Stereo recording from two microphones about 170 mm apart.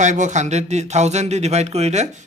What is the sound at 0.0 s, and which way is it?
Speech, 45° right (ahead or behind).